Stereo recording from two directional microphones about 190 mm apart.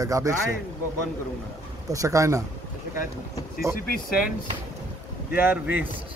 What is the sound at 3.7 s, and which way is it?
Speech, 50° left (ahead or behind).